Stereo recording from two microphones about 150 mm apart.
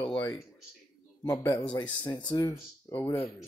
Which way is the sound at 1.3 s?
10° left (ahead or behind).